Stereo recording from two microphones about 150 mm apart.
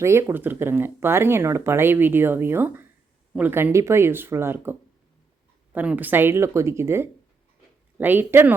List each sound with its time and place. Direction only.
0.0 s speech: 15° right (ahead or behind)